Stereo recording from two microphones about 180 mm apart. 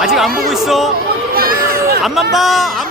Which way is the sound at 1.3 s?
55° right (ahead or behind).